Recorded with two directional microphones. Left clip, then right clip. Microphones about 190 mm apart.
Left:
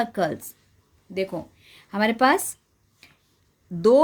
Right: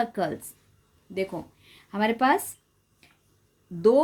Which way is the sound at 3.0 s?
30° left (ahead or behind).